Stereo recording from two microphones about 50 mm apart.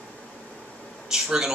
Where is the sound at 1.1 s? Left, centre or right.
Centre.